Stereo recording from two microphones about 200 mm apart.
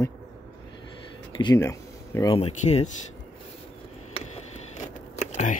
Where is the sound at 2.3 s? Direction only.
30° left (ahead or behind).